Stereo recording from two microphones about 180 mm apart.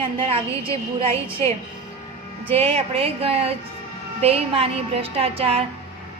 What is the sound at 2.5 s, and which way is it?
A woman's voice, 35° right (ahead or behind).